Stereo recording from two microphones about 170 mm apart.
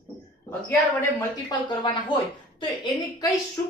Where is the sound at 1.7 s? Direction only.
25° left (ahead or behind).